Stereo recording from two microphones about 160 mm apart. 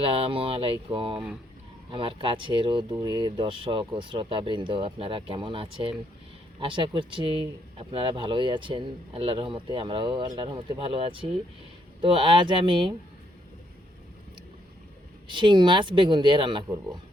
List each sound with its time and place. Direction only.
0.0 s speech: 35° right (ahead or behind)
15.3 s speech: 30° right (ahead or behind)